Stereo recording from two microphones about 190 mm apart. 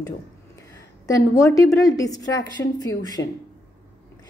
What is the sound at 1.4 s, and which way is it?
Speech, 15° left (ahead or behind).